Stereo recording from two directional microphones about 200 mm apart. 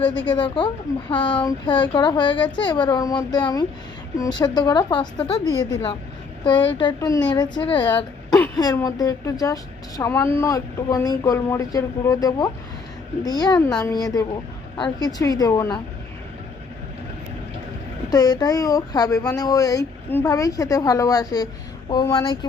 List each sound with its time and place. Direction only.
0.1 s speech: 5° left (ahead or behind)
0.3 s a child's voice: 25° left (ahead or behind)
6.4 s a child's voice: 25° left (ahead or behind)
18.1 s speech: 20° left (ahead or behind)